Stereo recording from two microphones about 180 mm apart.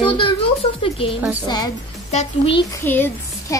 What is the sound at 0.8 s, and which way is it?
A child's voice, 30° left (ahead or behind).